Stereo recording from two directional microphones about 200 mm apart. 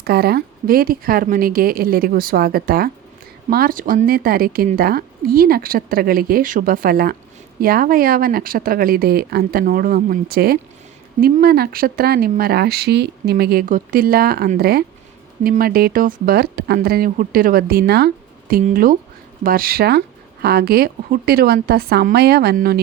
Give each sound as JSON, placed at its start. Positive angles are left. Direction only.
{"t": 0.0, "sound": "a woman's voice", "side_deg": -50}